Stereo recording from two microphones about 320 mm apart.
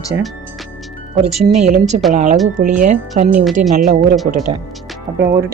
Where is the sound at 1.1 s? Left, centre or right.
Centre.